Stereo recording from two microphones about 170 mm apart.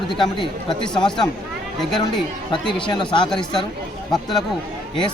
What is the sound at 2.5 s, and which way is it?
Speech, 30° left (ahead or behind).